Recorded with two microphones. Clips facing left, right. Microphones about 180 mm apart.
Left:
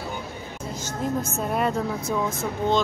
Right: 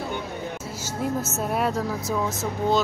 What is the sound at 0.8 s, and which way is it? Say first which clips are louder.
Speech: even; 5° right (ahead or behind).